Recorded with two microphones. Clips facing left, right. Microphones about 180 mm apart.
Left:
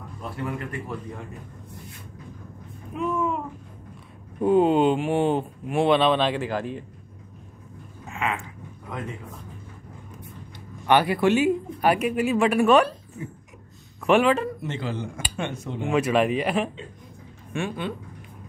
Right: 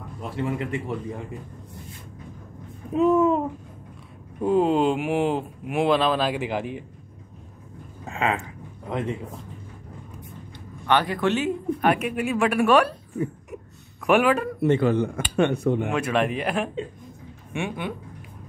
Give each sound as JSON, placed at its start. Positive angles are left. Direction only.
{"t": 0.4, "sound": "a man's voice", "side_deg": -25}
{"t": 2.9, "sound": "speech", "side_deg": -40}
{"t": 4.4, "sound": "speech", "side_deg": 0}
{"t": 6.4, "sound": "speech", "side_deg": -15}
{"t": 8.1, "sound": "a sound", "side_deg": -35}
{"t": 10.9, "sound": "speech", "side_deg": 10}
{"t": 14.0, "sound": "speech", "side_deg": -5}
{"t": 14.6, "sound": "speech", "side_deg": -55}
{"t": 15.9, "sound": "speech", "side_deg": 0}
{"t": 17.5, "sound": "speech", "side_deg": -15}